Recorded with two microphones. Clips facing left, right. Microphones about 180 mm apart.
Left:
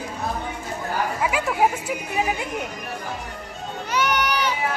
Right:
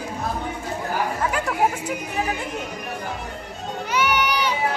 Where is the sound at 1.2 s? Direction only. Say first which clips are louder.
Left 2 dB; 10° left (ahead or behind).